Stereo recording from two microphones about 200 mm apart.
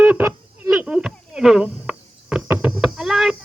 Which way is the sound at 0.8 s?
5° right (ahead or behind).